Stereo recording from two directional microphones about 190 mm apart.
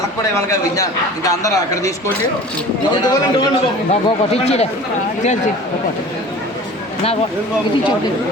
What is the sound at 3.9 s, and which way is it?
Speech, 35° left (ahead or behind).